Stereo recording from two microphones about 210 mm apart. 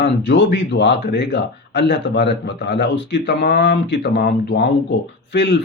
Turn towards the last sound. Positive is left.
turn(degrees=55)  # may be behind; listen again after turning